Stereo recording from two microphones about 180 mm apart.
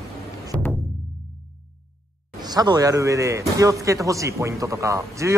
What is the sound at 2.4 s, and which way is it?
Speech, 20° right (ahead or behind).